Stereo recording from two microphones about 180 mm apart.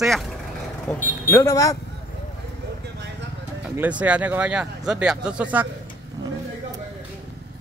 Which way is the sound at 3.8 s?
10° right (ahead or behind).